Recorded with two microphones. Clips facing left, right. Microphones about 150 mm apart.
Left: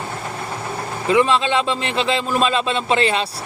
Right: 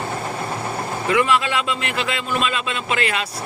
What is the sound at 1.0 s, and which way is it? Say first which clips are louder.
A man's voice: left 3 dB; 25° left (ahead or behind).